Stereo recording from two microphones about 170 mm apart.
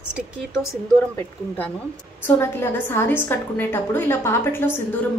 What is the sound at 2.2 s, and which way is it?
A woman's voice, 15° left (ahead or behind).